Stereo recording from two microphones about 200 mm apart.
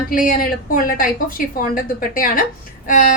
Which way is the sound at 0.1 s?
45° left (ahead or behind).